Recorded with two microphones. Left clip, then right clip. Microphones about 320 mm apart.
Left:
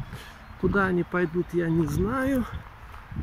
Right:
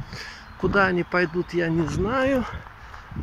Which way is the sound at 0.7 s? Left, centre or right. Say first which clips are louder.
Right 5 dB; centre.